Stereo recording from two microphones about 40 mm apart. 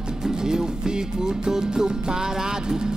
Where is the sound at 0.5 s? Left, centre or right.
Centre.